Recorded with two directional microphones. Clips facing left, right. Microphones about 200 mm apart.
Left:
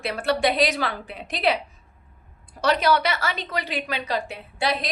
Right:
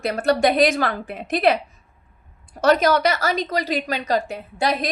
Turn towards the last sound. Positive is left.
turn(degrees=-45)  # may be behind; listen again after turning